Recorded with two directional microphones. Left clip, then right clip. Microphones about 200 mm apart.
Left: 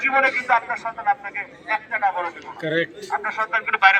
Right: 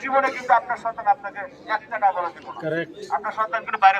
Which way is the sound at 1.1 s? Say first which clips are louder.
Right 1 dB; centre (ahead or behind).